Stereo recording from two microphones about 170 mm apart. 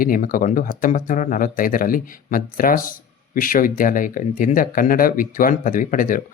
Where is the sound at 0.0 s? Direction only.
55° left (ahead or behind).